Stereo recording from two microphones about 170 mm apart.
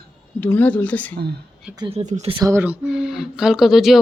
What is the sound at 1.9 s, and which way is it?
Speech, 40° right (ahead or behind).